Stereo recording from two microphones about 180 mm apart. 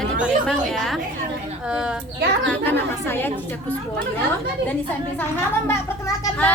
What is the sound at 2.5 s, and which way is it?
Speech, 10° left (ahead or behind).